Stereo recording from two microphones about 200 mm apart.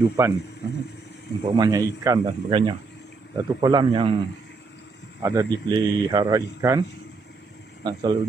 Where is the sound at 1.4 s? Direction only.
20° right (ahead or behind).